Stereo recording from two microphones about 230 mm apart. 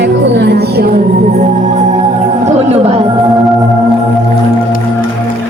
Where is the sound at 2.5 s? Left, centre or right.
Right.